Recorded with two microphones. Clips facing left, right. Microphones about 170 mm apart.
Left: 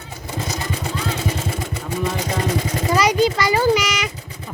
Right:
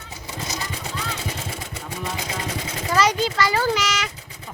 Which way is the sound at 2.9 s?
15° left (ahead or behind).